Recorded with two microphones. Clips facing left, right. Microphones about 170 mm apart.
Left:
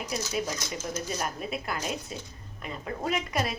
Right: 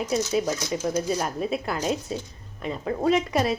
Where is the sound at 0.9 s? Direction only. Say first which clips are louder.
Right 7 dB; 30° right (ahead or behind).